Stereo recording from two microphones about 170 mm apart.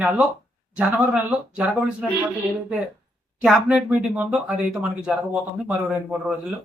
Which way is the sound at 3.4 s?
Centre (ahead or behind).